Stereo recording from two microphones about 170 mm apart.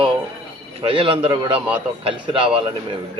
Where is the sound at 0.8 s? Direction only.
30° right (ahead or behind).